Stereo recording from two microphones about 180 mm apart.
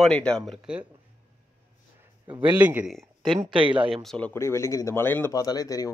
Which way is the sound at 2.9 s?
Centre (ahead or behind).